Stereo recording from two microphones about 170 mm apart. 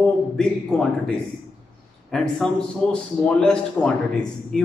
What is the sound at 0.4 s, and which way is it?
Speech, 5° left (ahead or behind).